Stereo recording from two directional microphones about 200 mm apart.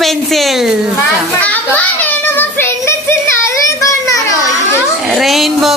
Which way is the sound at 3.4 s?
15° left (ahead or behind).